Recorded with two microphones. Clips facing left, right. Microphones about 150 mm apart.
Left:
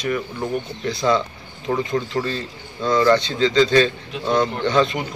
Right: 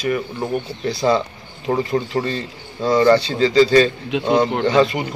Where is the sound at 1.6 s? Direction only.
30° right (ahead or behind).